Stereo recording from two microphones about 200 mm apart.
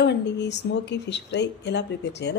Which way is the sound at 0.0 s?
60° left (ahead or behind).